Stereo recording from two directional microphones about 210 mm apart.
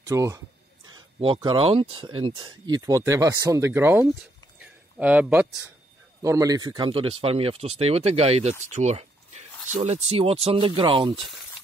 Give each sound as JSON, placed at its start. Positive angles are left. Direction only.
{"t": 0.0, "sound": "speech", "side_deg": -15}
{"t": 4.6, "sound": "a sound", "side_deg": -5}
{"t": 6.2, "sound": "speech", "side_deg": -15}